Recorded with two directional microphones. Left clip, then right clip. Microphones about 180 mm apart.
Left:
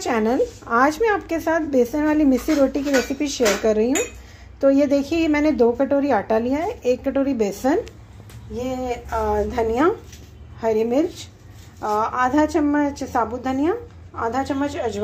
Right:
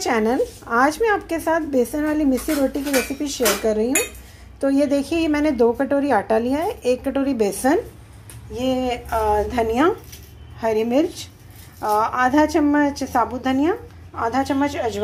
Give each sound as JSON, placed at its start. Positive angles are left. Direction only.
{"t": 0.0, "sound": "a woman's voice", "side_deg": 0}